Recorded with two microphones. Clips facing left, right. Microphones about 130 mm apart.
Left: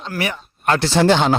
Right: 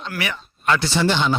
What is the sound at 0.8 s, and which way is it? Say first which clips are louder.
Speech: left 5 dB; 90° left.